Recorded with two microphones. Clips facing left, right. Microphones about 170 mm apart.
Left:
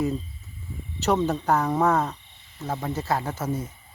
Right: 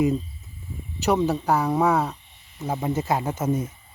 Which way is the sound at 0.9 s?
10° right (ahead or behind).